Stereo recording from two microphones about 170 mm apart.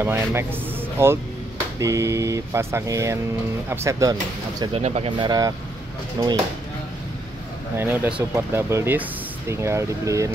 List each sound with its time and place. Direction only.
0.0 s speech: 15° right (ahead or behind)
4.7 s speech: 40° right (ahead or behind)
5.2 s speech: 25° right (ahead or behind)
7.7 s speech: 10° right (ahead or behind)